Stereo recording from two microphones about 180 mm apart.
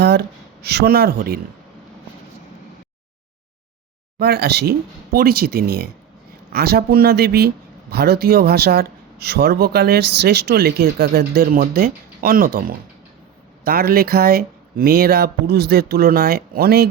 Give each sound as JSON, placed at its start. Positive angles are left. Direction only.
{"t": 0.0, "sound": "speech", "side_deg": -65}
{"t": 4.2, "sound": "speech", "side_deg": -60}